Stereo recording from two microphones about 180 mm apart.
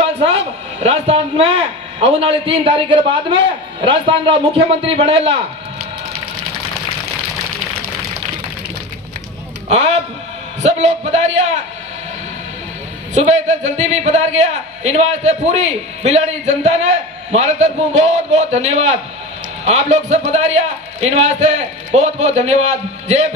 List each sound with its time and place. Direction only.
0.8 s a man's voice: 35° right (ahead or behind)
9.7 s a man's voice: 35° right (ahead or behind)
13.1 s a man's voice: 40° right (ahead or behind)